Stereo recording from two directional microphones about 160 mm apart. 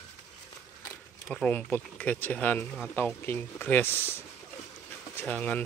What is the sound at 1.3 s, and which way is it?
Speech, 5° left (ahead or behind).